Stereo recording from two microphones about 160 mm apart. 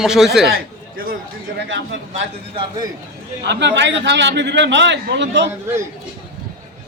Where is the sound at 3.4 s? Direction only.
90° right.